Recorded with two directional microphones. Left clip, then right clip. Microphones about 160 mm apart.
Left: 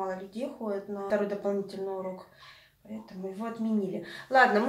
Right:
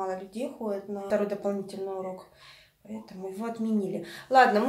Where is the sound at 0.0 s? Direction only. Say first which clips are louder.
Right 2 dB; 10° right (ahead or behind).